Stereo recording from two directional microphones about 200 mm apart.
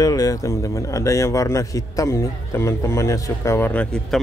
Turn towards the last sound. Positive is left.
turn(degrees=5)  # may be behind; listen again after turning